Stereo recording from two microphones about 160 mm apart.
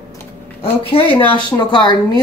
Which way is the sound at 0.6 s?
35° left (ahead or behind).